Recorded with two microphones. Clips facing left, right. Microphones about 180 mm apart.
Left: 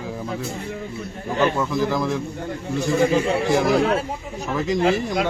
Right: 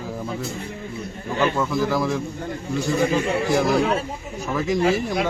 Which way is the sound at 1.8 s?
Centre (ahead or behind).